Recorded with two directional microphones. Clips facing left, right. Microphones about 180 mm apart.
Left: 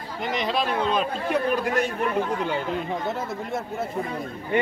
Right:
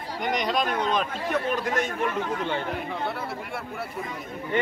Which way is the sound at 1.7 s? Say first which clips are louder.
Left 3 dB; 35° left (ahead or behind).